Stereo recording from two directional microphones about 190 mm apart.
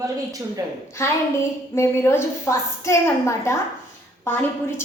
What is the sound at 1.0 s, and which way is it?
A woman's voice, 15° left (ahead or behind).